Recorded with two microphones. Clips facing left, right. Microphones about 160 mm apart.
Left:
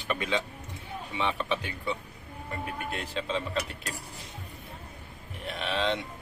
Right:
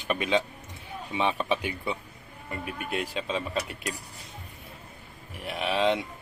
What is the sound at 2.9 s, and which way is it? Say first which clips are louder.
Speech: right 3 dB; 10° right (ahead or behind).